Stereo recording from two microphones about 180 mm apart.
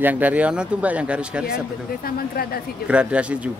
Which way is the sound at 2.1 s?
55° left (ahead or behind).